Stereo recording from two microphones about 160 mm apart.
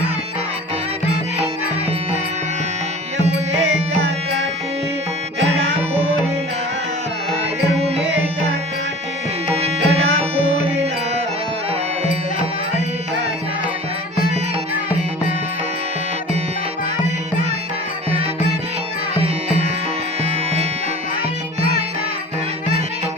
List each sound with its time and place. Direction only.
7.8 s music: 40° right (ahead or behind)
9.6 s music: 40° right (ahead or behind)
19.1 s music: 40° right (ahead or behind)